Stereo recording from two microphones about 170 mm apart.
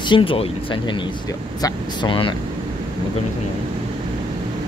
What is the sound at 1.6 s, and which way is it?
Speech, 30° left (ahead or behind).